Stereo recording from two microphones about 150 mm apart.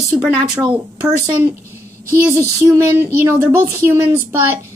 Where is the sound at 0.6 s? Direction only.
10° right (ahead or behind).